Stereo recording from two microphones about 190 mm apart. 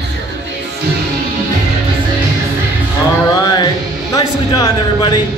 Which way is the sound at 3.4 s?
20° left (ahead or behind).